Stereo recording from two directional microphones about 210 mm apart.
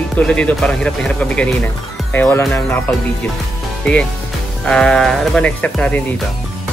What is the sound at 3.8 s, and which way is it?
Speech, 5° left (ahead or behind).